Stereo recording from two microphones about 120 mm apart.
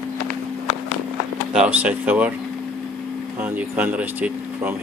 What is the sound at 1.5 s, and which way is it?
Speech, 10° right (ahead or behind).